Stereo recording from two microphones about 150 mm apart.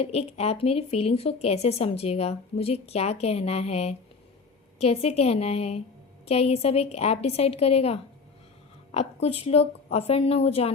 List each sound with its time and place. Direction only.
0.0 s a woman's voice: 45° left (ahead or behind)